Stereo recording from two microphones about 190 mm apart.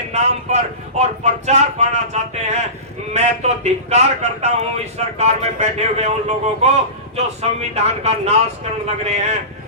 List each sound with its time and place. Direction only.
0.1 s a man's voice: 35° right (ahead or behind)